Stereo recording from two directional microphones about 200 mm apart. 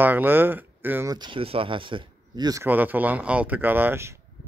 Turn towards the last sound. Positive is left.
turn(degrees=-10)  # may be behind; listen again after turning